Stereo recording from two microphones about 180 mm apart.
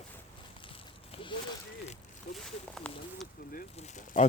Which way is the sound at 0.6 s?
30° left (ahead or behind).